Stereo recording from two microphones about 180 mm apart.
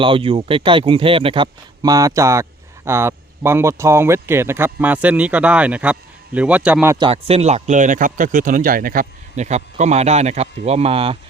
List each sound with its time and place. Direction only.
0.0 s a man's voice: 30° right (ahead or behind); by 6.9 s 5° right (ahead or behind)
6.9 s speech: 30° right (ahead or behind)